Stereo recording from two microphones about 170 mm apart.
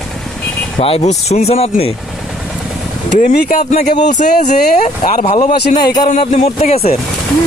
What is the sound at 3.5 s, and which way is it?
Speech, 45° left (ahead or behind).